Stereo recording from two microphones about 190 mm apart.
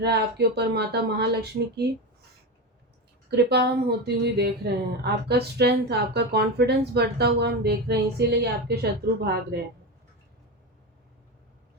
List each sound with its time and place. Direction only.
0.0 s speech: 60° right (ahead or behind)
3.2 s speech: 60° right (ahead or behind)